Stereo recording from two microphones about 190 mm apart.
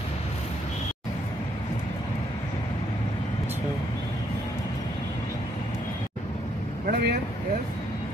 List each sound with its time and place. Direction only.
6.9 s speech: 60° right (ahead or behind)